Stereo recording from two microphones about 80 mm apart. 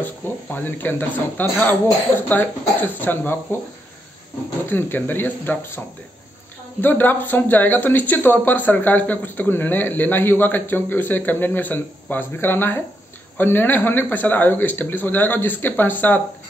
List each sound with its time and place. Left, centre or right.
0.0 s speech: left
4.6 s speech: left
6.8 s speech: left